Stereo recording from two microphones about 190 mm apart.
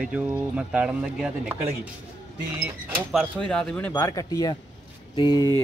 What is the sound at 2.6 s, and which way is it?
A man's voice, 5° right (ahead or behind).